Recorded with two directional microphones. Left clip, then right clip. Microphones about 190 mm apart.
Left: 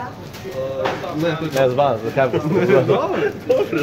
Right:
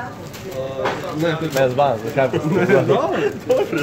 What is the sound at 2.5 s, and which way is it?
Speech, 25° right (ahead or behind).